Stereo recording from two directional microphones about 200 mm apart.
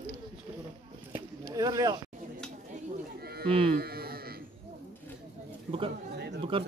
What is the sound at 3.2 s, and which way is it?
Livestock, 50° right (ahead or behind).